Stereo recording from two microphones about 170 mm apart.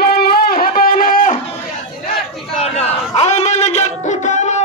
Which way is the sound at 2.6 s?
40° left (ahead or behind).